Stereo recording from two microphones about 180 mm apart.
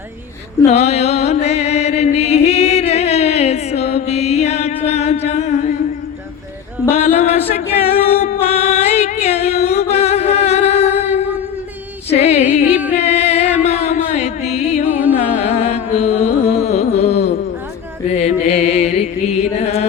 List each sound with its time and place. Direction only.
0.7 s chant: 35° left (ahead or behind)
6.9 s a capella: 35° left (ahead or behind)
8.4 s music: 35° left (ahead or behind)
12.1 s female singing: 35° left (ahead or behind)
13.0 s music: 35° left (ahead or behind)
15.1 s carnatic music: 35° left (ahead or behind)
18.2 s music: 35° left (ahead or behind)